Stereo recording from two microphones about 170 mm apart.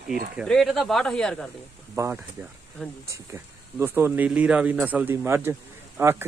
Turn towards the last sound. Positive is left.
turn(degrees=-15)  # may be behind; listen again after turning